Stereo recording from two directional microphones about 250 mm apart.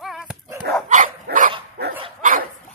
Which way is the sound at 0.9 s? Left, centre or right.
Right.